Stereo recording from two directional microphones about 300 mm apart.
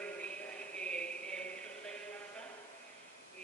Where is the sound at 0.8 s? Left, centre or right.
Centre.